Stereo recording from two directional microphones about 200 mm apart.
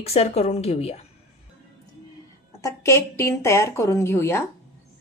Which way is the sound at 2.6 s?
15° left (ahead or behind).